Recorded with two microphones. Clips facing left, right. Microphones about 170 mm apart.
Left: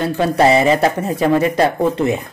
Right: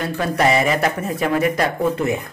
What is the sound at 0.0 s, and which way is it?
Speech, 30° left (ahead or behind).